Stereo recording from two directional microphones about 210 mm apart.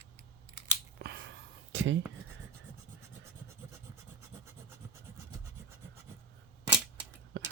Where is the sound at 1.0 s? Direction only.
55° right (ahead or behind).